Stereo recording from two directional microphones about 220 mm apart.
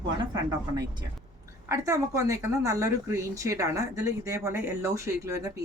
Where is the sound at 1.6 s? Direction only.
15° right (ahead or behind).